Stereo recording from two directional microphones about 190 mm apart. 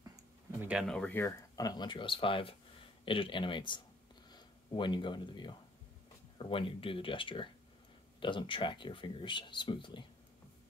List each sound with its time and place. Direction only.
0.7 s speech: centre (ahead or behind); by 10.0 s 25° left (ahead or behind)